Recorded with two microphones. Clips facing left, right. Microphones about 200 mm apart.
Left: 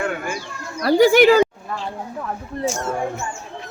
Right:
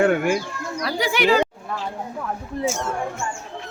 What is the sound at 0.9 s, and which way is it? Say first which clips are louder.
Speech: left 9 dB; 45° left (ahead or behind).